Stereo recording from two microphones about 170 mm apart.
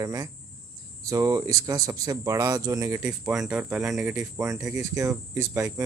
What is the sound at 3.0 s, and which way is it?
Speech, 5° right (ahead or behind).